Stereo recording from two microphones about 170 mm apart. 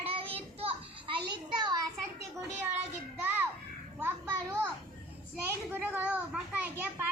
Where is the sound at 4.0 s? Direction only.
10° right (ahead or behind).